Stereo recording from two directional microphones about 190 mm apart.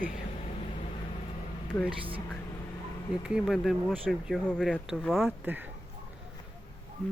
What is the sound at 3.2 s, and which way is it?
Speech, 5° right (ahead or behind).